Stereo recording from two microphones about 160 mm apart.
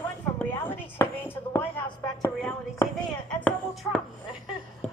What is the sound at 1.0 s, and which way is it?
Chopping, 20° left (ahead or behind).